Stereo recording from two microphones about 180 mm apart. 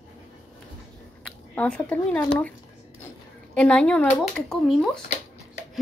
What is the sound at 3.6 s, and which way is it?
Speech, 5° left (ahead or behind).